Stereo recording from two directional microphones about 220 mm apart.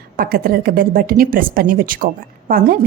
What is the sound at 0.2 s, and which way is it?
A woman's voice, 45° right (ahead or behind).